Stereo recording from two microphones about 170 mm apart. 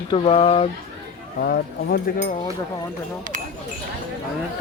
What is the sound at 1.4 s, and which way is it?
Speech, 65° left (ahead or behind).